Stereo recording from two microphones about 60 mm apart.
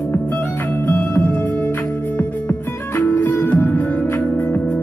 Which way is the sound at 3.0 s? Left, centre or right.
Left.